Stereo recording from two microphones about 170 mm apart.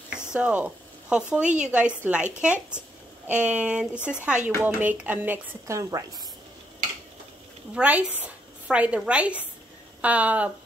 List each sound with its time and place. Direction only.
0.1 s speech: 5° right (ahead or behind)
7.7 s speech: 5° right (ahead or behind)